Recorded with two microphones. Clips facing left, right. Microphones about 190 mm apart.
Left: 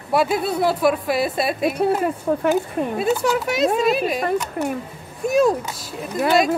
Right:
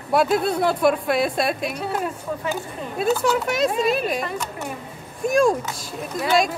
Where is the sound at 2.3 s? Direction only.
55° left (ahead or behind).